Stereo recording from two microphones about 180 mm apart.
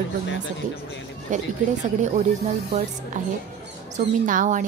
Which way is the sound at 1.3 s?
40° right (ahead or behind).